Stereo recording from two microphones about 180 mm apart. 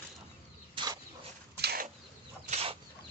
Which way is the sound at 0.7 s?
25° right (ahead or behind).